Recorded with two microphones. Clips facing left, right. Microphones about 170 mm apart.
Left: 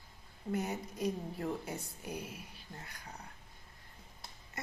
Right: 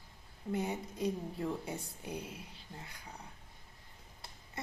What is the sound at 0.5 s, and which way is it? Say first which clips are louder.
Speech: even; 25° right (ahead or behind).